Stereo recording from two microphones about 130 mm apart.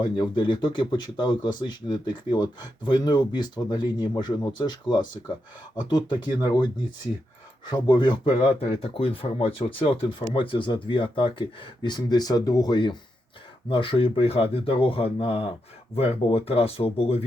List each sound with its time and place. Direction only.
0.0 s speech: 35° left (ahead or behind)
7.7 s speech: 35° left (ahead or behind)